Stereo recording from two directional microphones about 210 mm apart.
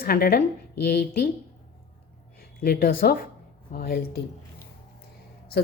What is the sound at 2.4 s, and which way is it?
A woman's voice, 45° left (ahead or behind).